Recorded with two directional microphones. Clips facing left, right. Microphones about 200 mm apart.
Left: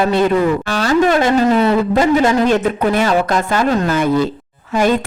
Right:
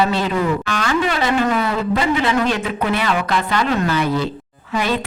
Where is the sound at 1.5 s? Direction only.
25° left (ahead or behind).